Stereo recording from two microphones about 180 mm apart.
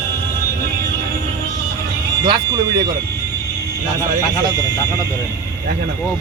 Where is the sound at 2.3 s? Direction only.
25° right (ahead or behind).